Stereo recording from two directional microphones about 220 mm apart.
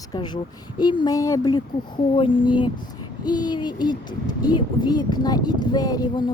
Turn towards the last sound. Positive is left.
turn(degrees=20)  # may be behind; listen again after turning